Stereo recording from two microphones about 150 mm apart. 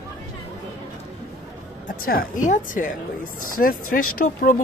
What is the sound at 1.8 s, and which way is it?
A woman's voice, 70° left (ahead or behind).